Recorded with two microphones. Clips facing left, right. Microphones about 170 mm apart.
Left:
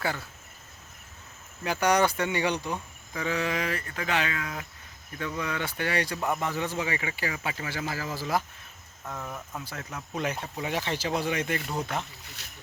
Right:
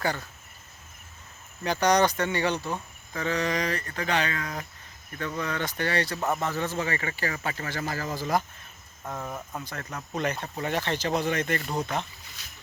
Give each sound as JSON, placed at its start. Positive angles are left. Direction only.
{"t": 1.6, "sound": "speech", "side_deg": 10}
{"t": 9.0, "sound": "speech", "side_deg": -15}
{"t": 9.6, "sound": "speech", "side_deg": 5}